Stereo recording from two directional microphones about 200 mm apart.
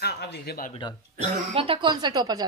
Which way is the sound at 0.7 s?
25° left (ahead or behind).